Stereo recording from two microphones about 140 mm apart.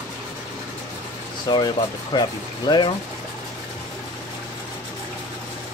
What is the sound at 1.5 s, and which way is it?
Speech, 30° left (ahead or behind).